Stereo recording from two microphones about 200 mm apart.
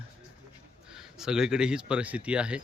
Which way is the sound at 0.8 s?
5° right (ahead or behind).